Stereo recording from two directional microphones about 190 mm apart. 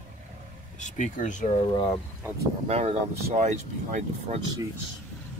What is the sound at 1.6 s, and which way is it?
Speech, 25° left (ahead or behind).